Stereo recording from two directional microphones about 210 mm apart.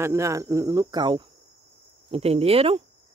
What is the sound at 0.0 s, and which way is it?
Speech, 15° right (ahead or behind).